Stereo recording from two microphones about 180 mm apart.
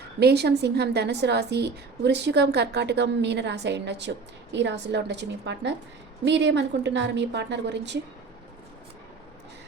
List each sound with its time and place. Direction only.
0.2 s a woman's voice: 65° right (ahead or behind)